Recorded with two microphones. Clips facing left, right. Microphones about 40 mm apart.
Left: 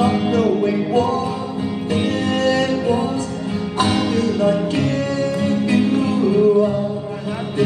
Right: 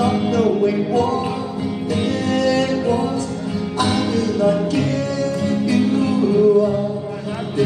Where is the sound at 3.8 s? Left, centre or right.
Left.